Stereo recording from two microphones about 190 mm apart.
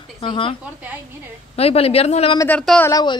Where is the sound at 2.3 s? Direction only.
10° left (ahead or behind).